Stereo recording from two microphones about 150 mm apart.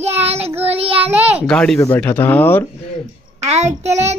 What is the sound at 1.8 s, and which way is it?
Speech, 15° left (ahead or behind).